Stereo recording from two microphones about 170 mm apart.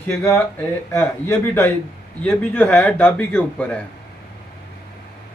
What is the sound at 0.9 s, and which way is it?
Speech, 15° left (ahead or behind).